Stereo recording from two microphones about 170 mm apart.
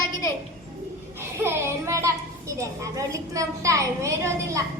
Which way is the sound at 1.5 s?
15° right (ahead or behind).